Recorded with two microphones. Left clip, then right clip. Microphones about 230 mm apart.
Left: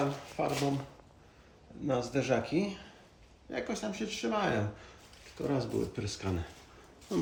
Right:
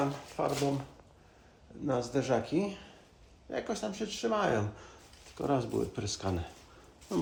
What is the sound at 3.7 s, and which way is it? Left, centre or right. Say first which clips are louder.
Speech: right 1 dB; centre.